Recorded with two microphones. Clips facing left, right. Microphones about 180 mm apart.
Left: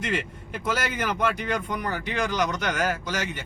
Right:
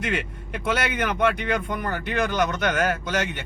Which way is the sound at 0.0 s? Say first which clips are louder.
Right 1 dB; 65° right (ahead or behind).